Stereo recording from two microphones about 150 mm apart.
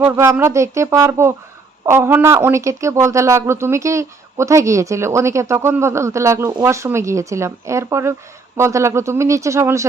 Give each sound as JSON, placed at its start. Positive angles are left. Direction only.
{"t": 0.0, "sound": "speech", "side_deg": -15}